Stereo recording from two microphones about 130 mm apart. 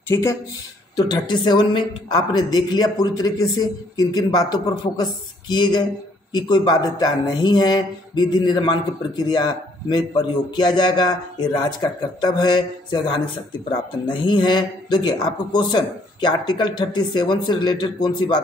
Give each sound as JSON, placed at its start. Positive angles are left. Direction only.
{"t": 0.1, "sound": "speech", "side_deg": 20}
{"t": 0.9, "sound": "a man's voice", "side_deg": 35}